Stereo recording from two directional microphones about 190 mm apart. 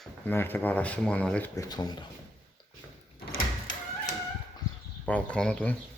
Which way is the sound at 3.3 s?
45° left (ahead or behind).